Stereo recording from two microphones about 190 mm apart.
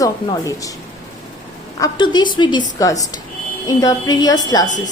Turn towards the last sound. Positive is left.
turn(degrees=20)  # may be behind; listen again after turning